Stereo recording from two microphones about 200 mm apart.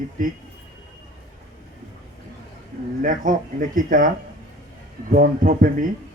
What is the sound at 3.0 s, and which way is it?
Speech, 40° right (ahead or behind).